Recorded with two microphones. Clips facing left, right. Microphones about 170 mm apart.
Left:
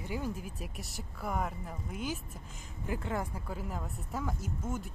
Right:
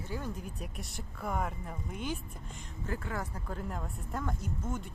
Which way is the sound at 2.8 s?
20° left (ahead or behind).